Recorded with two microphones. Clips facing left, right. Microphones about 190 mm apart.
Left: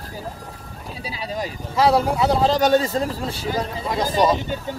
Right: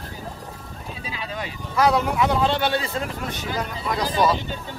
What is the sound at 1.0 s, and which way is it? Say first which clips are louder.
Boat: left 5 dB; 35° left (ahead or behind).